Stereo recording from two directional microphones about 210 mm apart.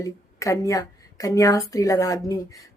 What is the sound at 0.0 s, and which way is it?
Speech, 15° left (ahead or behind).